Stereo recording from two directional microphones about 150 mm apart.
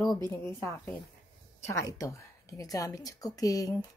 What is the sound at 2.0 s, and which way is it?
A woman's voice, 20° left (ahead or behind).